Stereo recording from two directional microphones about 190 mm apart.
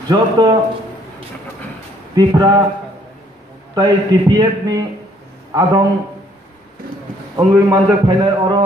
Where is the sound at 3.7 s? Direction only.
20° right (ahead or behind).